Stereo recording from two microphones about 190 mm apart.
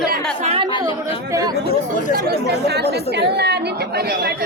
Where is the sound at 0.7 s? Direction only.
25° left (ahead or behind).